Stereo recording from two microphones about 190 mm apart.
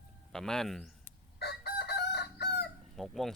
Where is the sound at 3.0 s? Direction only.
Centre (ahead or behind).